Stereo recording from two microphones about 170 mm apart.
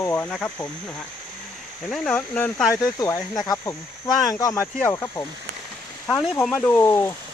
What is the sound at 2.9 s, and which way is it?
Speech, 20° left (ahead or behind).